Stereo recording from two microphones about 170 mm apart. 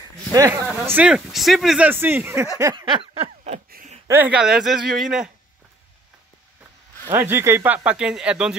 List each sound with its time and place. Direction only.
0.3 s speech: 20° right (ahead or behind)
0.8 s speech: 5° right (ahead or behind)
2.6 s a sound: 25° right (ahead or behind)
3.7 s a sound: 50° right (ahead or behind)
4.1 s speech: 10° right (ahead or behind)
7.1 s speech: 15° right (ahead or behind)